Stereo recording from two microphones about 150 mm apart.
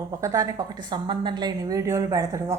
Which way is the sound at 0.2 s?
25° right (ahead or behind).